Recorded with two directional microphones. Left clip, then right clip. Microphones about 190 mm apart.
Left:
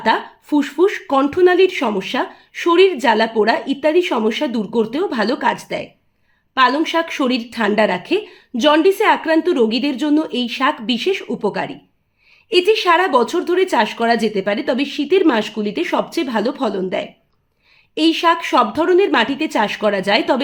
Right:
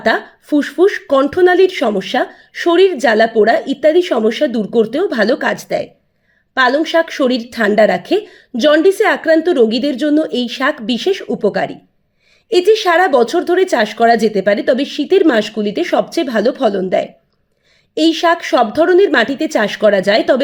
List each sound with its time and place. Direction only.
0.0 s speech: 15° right (ahead or behind)